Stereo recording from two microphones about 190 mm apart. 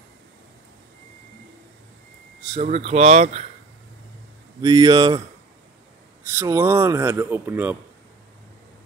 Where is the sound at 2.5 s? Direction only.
35° right (ahead or behind).